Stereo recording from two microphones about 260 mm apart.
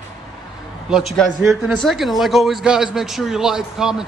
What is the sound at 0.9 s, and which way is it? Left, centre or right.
A man's voice, centre.